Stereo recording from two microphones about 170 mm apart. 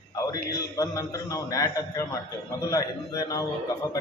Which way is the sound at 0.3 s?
20° left (ahead or behind).